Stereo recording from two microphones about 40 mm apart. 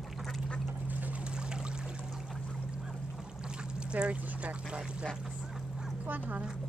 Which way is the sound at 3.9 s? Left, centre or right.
Right.